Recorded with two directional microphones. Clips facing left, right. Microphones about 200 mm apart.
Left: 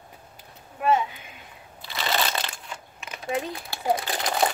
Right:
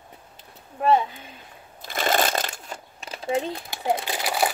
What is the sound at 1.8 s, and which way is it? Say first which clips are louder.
Shuffling cards: right 4 dB; 50° right (ahead or behind).